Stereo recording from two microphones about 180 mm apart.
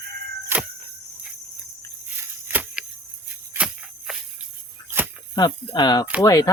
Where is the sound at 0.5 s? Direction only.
10° right (ahead or behind).